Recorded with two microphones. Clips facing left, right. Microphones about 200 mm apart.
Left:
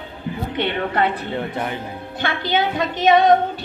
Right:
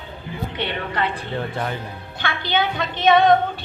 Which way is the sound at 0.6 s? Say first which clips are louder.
Left 5 dB; 55° left (ahead or behind).